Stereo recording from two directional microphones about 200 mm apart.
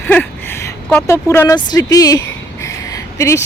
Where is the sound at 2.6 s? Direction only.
15° left (ahead or behind).